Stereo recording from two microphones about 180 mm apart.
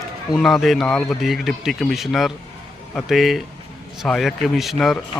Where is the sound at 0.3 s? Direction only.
Centre (ahead or behind).